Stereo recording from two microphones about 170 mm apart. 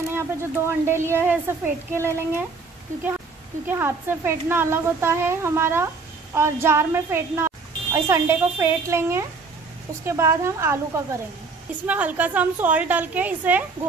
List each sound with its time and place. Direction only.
0.1 s a woman's voice: 15° right (ahead or behind)
3.6 s a woman's voice: 10° right (ahead or behind)